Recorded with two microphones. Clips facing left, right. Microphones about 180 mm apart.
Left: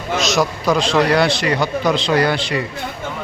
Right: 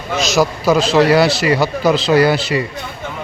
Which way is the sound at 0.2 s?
Centre (ahead or behind).